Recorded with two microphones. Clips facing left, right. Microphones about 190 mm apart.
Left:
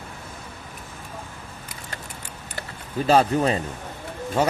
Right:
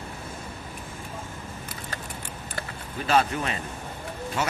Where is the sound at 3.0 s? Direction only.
35° left (ahead or behind).